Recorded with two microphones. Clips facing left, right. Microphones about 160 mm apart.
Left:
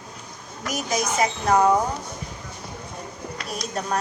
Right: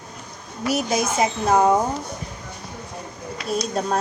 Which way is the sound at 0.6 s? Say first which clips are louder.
Right 4 dB; 30° right (ahead or behind).